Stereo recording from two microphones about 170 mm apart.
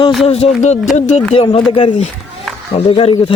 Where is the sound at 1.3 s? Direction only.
35° left (ahead or behind).